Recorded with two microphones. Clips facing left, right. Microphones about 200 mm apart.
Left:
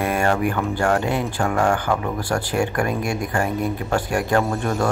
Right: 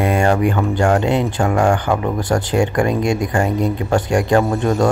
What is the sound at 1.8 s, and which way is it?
Speech, 20° right (ahead or behind).